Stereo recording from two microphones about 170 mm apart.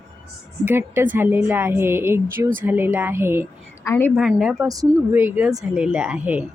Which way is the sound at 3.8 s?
10° left (ahead or behind).